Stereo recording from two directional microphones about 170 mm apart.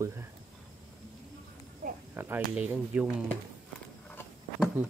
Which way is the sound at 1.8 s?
45° right (ahead or behind).